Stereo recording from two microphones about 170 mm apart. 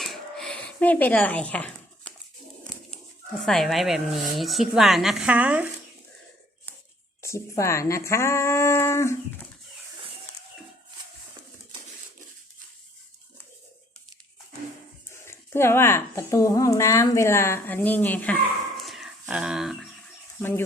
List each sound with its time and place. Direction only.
0.0 s dishes: centre (ahead or behind)
3.4 s speech: centre (ahead or behind)
7.2 s speech: 15° left (ahead or behind)
15.2 s speech: 15° left (ahead or behind)
18.8 s dog: centre (ahead or behind)
19.2 s speech: 5° right (ahead or behind)